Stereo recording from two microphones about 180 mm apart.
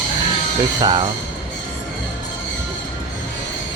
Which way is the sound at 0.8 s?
25° right (ahead or behind).